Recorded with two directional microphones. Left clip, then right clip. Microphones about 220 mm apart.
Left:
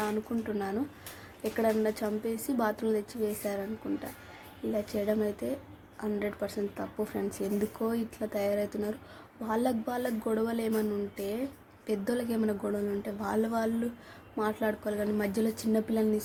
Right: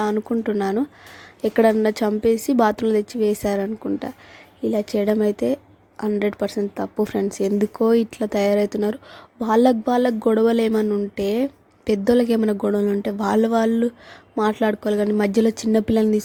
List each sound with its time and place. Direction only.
0.0 s speech: 40° right (ahead or behind)